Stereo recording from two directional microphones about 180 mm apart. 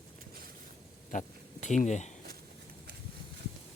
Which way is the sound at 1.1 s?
45° left (ahead or behind).